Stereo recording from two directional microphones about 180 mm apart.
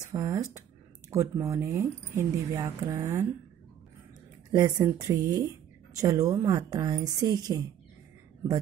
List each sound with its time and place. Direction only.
0.0 s speech: 20° right (ahead or behind)
4.5 s a woman's voice: 20° right (ahead or behind)